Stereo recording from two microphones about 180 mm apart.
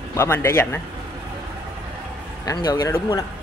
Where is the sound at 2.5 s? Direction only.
20° left (ahead or behind).